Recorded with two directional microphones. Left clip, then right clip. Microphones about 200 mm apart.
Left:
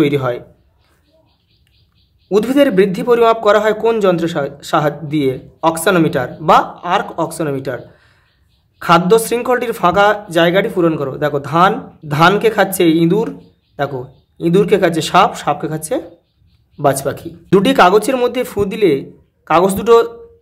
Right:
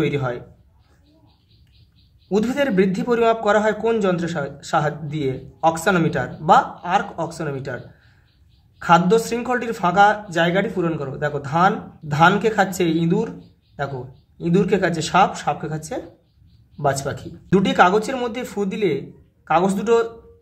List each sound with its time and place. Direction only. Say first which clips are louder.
0.0 s a man's voice: left 8 dB; 30° left (ahead or behind)
2.2 s a man's voice: left 8 dB; 30° left (ahead or behind)
14.4 s a man's voice: left 7 dB; 30° left (ahead or behind)